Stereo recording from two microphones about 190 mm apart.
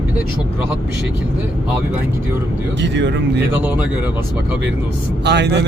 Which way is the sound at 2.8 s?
70° right (ahead or behind).